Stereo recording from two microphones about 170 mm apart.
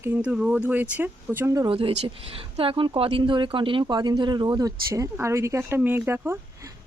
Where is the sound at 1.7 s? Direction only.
30° right (ahead or behind).